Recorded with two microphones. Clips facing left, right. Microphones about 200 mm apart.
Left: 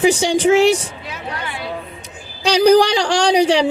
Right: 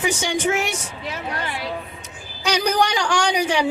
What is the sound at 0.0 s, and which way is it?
Speech, 35° left (ahead or behind).